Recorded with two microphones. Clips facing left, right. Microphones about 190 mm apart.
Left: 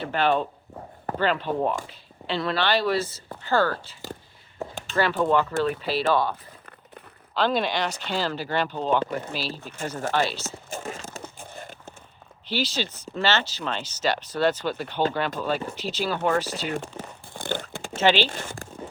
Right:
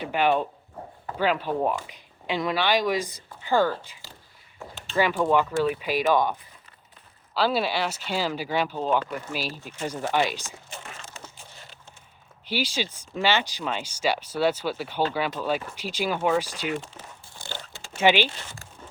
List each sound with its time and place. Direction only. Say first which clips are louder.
0.0 s speech: even; 15° right (ahead or behind)
4.9 s speech: even; 10° right (ahead or behind)
7.3 s speech: even; 5° right (ahead or behind)
10.4 s a sound: left 8 dB; 45° left (ahead or behind)
12.5 s speech: left 1 dB; 10° right (ahead or behind)
16.9 s crumpling: left 7 dB; 35° left (ahead or behind)
17.3 s a sound: left 10 dB; 55° left (ahead or behind)
17.9 s speech: even; 15° right (ahead or behind)
18.3 s speech: left 6 dB; 50° left (ahead or behind)